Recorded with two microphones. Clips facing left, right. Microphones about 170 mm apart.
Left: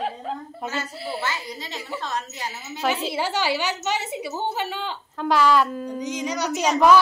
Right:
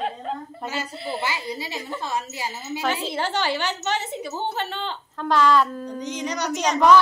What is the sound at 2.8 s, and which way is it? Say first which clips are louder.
A woman's voice: left 2 dB; 10° left (ahead or behind).